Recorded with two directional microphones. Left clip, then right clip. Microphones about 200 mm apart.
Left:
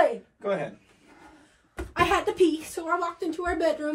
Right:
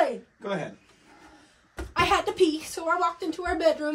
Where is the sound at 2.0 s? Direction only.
15° right (ahead or behind).